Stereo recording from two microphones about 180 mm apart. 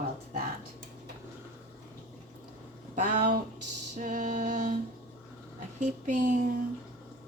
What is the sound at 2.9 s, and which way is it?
Speech, 45° right (ahead or behind).